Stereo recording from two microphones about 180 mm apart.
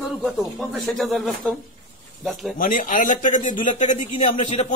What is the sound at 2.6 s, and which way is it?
A man's voice, 45° left (ahead or behind).